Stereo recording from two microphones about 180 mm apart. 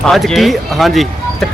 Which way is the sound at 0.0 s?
Centre (ahead or behind).